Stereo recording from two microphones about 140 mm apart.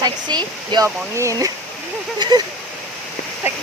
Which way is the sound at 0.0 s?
30° right (ahead or behind).